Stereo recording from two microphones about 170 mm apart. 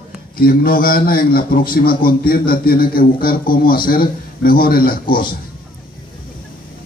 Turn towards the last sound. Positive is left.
turn(degrees=55)  # may be behind; listen again after turning